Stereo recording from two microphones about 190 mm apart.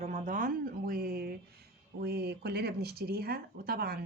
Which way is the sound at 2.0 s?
55° right (ahead or behind).